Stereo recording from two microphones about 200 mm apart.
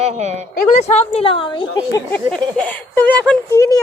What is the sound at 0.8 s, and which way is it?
A woman's voice, 35° left (ahead or behind).